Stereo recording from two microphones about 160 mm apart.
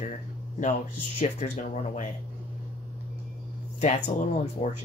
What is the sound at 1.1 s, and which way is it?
Speech, 45° left (ahead or behind).